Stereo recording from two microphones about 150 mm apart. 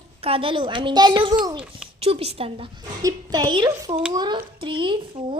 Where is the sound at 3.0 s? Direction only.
25° right (ahead or behind).